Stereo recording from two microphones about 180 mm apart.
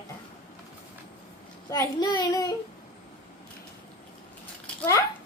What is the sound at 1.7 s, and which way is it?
Speech, 20° left (ahead or behind).